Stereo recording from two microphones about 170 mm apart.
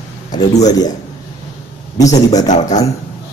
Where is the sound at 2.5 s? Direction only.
45° left (ahead or behind).